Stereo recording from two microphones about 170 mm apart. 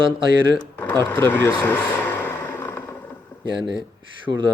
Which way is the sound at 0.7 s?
15° left (ahead or behind).